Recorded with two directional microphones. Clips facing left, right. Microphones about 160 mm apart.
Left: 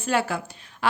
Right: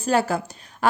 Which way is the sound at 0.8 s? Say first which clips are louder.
Right 4 dB; 45° right (ahead or behind).